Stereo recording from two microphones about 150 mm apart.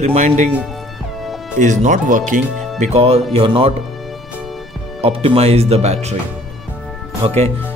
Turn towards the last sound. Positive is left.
turn(degrees=-45)  # may be behind; listen again after turning